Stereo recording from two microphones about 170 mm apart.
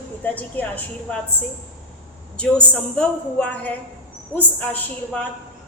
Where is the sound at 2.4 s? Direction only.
5° left (ahead or behind).